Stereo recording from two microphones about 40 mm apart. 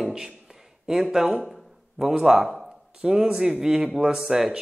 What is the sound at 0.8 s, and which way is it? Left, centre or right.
A man's voice, centre.